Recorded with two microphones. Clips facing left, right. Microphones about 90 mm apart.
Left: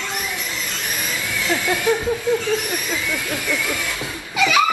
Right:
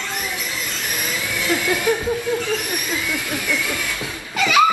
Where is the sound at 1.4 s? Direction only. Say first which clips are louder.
Even; 25° left (ahead or behind).